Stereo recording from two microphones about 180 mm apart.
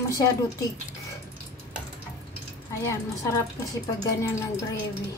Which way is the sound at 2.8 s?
15° left (ahead or behind).